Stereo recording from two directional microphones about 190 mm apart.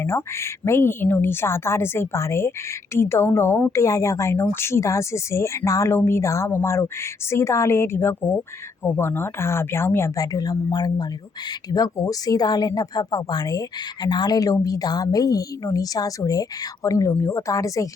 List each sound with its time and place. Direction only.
0.0 s a woman's voice: 15° left (ahead or behind)